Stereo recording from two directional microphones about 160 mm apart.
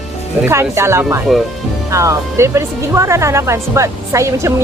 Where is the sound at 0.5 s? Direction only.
15° right (ahead or behind).